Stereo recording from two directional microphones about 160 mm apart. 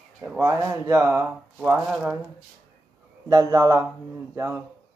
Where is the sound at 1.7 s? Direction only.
5° right (ahead or behind).